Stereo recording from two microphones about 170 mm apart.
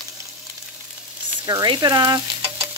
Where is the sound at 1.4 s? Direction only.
25° right (ahead or behind).